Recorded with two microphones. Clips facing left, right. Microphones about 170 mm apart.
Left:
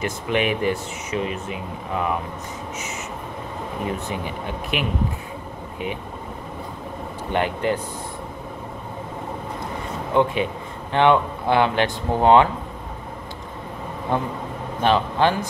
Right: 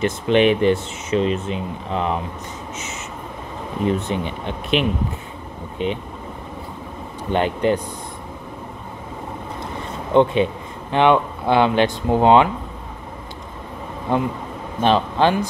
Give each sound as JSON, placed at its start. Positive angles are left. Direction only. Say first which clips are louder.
{"t": 0.0, "sound": "speech", "louder": "right 7 dB", "side_deg": -25}
{"t": 3.8, "sound": "speech", "louder": "right 7 dB", "side_deg": -25}
{"t": 7.2, "sound": "speech", "louder": "right 4 dB", "side_deg": -20}
{"t": 10.1, "sound": "a man's voice", "louder": "right 5 dB", "side_deg": -25}
{"t": 14.8, "sound": "speech", "louder": "right 2 dB", "side_deg": -20}